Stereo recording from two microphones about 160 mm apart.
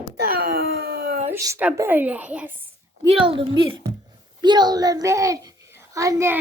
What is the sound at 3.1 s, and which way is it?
A woman's voice, 35° right (ahead or behind).